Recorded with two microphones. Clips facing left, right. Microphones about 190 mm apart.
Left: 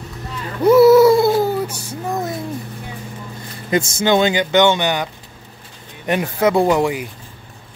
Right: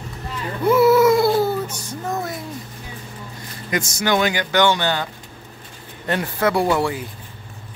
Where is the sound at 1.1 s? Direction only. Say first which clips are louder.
Left 2 dB; 20° left (ahead or behind).